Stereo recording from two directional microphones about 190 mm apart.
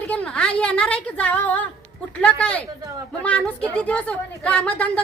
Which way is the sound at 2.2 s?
5° left (ahead or behind).